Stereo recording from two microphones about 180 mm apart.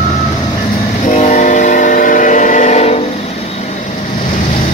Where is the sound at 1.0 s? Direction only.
40° left (ahead or behind).